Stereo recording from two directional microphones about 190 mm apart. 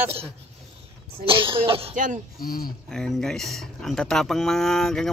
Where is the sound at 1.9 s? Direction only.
40° right (ahead or behind).